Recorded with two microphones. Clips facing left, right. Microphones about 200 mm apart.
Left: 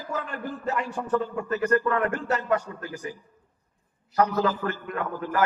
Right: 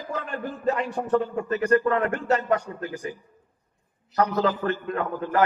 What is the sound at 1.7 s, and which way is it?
Speech, 30° right (ahead or behind).